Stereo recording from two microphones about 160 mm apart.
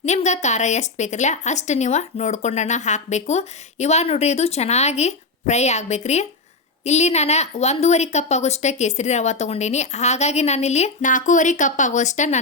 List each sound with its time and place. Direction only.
0.0 s a woman's voice: 45° left (ahead or behind)